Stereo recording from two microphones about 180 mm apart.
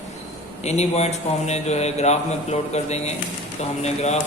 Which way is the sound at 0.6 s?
35° left (ahead or behind).